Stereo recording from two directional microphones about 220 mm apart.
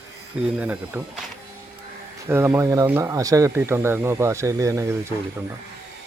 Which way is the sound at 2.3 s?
10° right (ahead or behind).